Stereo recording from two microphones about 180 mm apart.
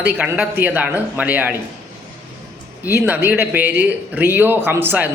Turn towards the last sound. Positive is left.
turn(degrees=-10)  # may be behind; listen again after turning